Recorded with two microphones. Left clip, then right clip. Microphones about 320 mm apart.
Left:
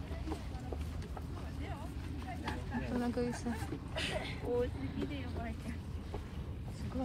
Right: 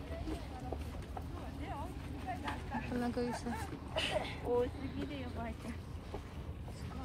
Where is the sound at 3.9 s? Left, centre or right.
Centre.